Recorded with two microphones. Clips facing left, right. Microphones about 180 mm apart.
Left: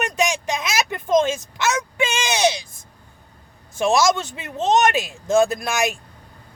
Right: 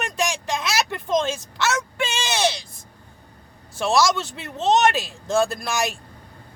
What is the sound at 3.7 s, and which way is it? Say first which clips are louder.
Speech: left 2 dB; 15° left (ahead or behind).